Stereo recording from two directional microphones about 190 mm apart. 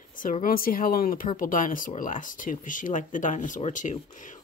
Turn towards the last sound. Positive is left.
turn(degrees=40)  # may be behind; listen again after turning